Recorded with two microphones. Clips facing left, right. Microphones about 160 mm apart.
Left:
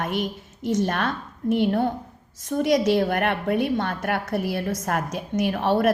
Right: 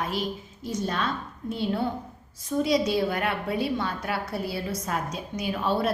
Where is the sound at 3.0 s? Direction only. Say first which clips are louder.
Left 4 dB; 60° left (ahead or behind).